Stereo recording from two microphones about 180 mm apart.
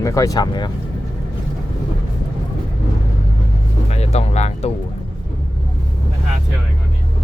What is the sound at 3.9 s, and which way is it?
Music, 35° left (ahead or behind).